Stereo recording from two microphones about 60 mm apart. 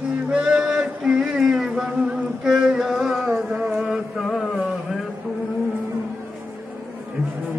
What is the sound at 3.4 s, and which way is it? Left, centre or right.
Music, centre.